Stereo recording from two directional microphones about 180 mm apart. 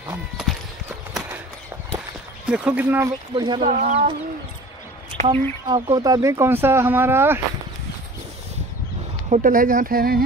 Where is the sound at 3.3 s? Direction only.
25° right (ahead or behind).